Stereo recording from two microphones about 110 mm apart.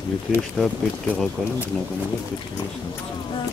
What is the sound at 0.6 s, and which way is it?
Speech, 10° left (ahead or behind).